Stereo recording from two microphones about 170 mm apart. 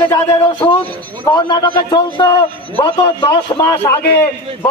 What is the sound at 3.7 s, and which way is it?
Speech, 10° left (ahead or behind).